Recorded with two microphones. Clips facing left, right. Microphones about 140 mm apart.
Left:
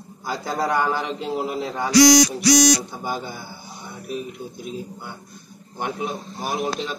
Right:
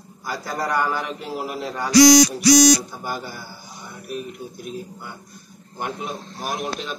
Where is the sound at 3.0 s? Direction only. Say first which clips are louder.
Left 2 dB; 20° left (ahead or behind).